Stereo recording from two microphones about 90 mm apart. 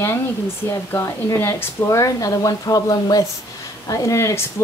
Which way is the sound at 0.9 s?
25° left (ahead or behind).